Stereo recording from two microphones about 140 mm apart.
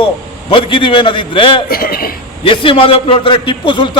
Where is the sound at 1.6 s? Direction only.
90° left.